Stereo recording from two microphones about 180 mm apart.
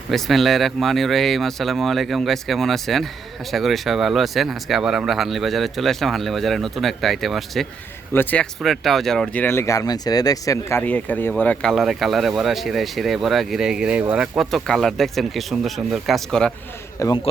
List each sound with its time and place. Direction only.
0.1 s speech: centre (ahead or behind)
17.0 s a man's voice: 20° left (ahead or behind)